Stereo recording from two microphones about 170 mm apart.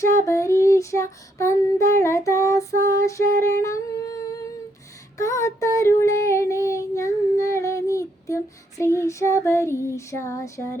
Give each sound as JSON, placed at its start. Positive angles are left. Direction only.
{"t": 0.0, "sound": "child singing", "side_deg": 20}